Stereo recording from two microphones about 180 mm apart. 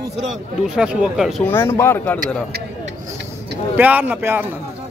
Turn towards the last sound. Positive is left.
turn(degrees=-10)  # may be behind; listen again after turning